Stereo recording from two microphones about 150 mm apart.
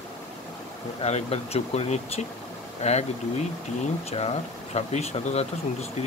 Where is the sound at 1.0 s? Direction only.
45° left (ahead or behind).